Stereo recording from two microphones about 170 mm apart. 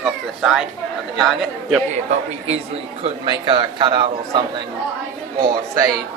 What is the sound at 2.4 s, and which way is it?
Speech, 40° right (ahead or behind).